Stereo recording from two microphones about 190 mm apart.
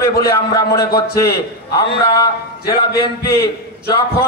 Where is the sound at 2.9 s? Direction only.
55° left (ahead or behind).